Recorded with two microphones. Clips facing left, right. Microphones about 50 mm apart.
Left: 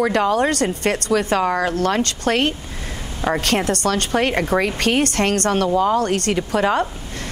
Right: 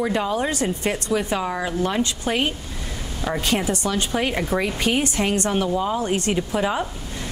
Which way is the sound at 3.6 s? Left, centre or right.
Left.